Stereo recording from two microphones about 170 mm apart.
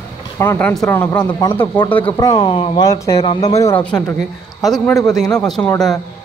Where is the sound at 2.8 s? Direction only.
20° left (ahead or behind).